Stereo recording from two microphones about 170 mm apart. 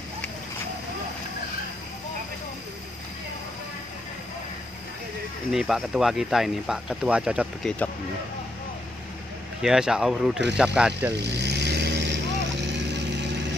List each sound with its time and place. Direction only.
5.5 s speech: centre (ahead or behind)
9.6 s speech: 5° right (ahead or behind)
11.2 s vehicle: 80° right